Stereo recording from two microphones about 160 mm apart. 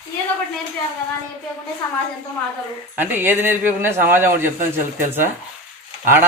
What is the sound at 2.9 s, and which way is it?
A man's voice, 10° right (ahead or behind).